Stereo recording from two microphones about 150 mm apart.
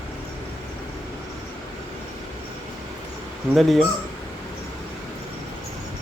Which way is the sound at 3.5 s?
Centre (ahead or behind).